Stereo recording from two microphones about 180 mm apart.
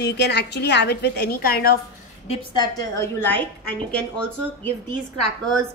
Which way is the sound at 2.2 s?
25° left (ahead or behind).